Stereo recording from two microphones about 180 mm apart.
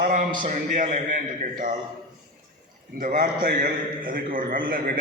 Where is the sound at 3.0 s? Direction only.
55° right (ahead or behind).